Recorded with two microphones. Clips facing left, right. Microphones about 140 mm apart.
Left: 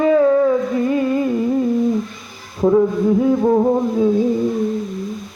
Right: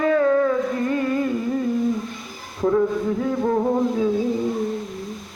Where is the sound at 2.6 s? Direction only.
20° left (ahead or behind).